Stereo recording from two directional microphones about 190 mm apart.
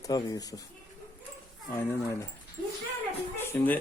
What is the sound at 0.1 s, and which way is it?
Speech, 20° left (ahead or behind).